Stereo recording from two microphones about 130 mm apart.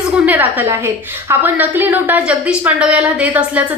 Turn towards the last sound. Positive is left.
turn(degrees=-10)  # may be behind; listen again after turning